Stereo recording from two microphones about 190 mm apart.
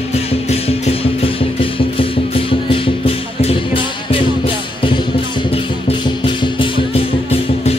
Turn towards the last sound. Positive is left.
turn(degrees=25)  # may be behind; listen again after turning